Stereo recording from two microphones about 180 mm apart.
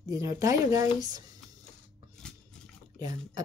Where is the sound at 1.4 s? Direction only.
Centre (ahead or behind).